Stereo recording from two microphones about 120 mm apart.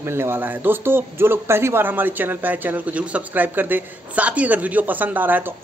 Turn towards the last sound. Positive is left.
turn(degrees=-15)  # may be behind; listen again after turning